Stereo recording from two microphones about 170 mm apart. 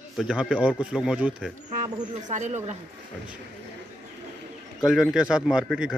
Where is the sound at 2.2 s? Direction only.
45° right (ahead or behind).